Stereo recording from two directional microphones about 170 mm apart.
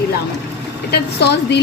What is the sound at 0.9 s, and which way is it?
Speech, 80° left.